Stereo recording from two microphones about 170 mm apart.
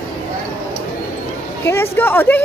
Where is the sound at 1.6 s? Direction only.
15° left (ahead or behind).